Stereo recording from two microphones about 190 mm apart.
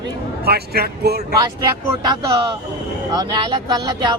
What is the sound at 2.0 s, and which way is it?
A man's voice, 25° right (ahead or behind).